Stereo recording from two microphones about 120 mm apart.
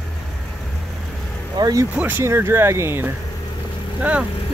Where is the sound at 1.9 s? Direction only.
10° right (ahead or behind).